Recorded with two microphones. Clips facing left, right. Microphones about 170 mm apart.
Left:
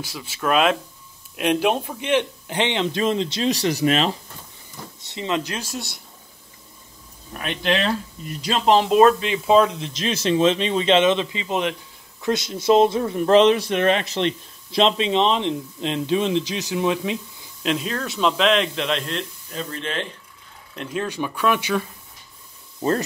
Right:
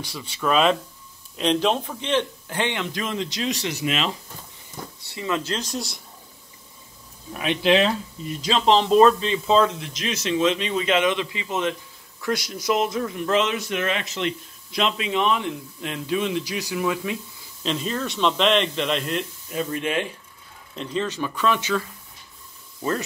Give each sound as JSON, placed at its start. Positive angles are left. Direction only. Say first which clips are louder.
{"t": 0.0, "sound": "a man's voice", "louder": "left 1 dB", "side_deg": 5}
{"t": 5.0, "sound": "speech", "louder": "left 2 dB", "side_deg": 20}
{"t": 7.3, "sound": "a man's voice", "louder": "right 4 dB", "side_deg": -5}
{"t": 8.6, "sound": "speech", "louder": "left 1 dB", "side_deg": 10}
{"t": 9.8, "sound": "a man's voice", "louder": "left 4 dB", "side_deg": 30}
{"t": 17.6, "sound": "a man's voice", "louder": "left 2 dB", "side_deg": 0}
{"t": 20.7, "sound": "speech", "louder": "even", "side_deg": 5}
{"t": 22.8, "sound": "speech", "louder": "left 4 dB", "side_deg": 30}